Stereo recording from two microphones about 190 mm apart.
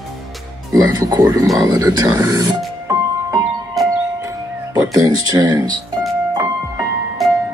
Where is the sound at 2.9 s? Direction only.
15° right (ahead or behind).